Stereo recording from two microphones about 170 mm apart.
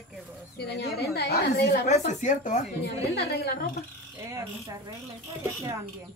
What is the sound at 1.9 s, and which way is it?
Speech, 45° left (ahead or behind).